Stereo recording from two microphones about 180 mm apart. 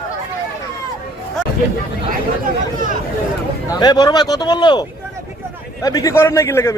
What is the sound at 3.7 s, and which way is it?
Speech, 20° left (ahead or behind).